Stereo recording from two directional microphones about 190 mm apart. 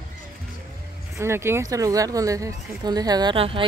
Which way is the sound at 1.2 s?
15° right (ahead or behind).